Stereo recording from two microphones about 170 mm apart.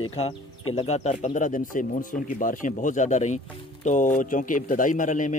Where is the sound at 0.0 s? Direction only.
35° left (ahead or behind).